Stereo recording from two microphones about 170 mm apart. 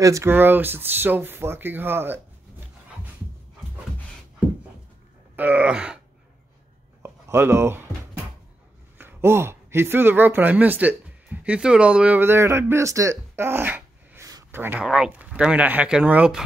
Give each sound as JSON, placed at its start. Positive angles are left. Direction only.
{"t": 0.0, "sound": "speech", "side_deg": -15}
{"t": 5.3, "sound": "speech", "side_deg": -10}
{"t": 7.0, "sound": "speech", "side_deg": -15}